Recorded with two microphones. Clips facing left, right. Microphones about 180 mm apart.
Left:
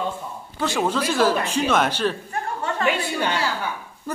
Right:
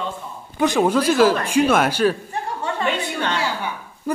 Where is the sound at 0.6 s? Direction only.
15° right (ahead or behind).